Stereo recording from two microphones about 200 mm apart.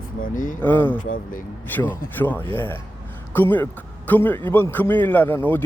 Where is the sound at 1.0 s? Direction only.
45° left (ahead or behind).